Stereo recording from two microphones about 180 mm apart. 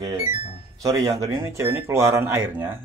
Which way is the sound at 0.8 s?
20° right (ahead or behind).